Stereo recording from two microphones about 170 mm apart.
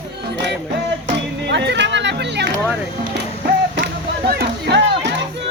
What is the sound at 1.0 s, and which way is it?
Chatter, 90° right.